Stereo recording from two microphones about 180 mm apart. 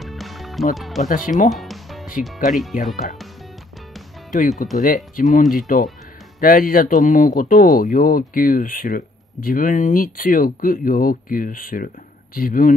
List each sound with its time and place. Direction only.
0.0 s music: centre (ahead or behind)
0.7 s speech: centre (ahead or behind)
1.0 s speech: 50° left (ahead or behind)
1.5 s music: centre (ahead or behind)
2.8 s speech: 50° left (ahead or behind)
4.3 s speech: 45° left (ahead or behind)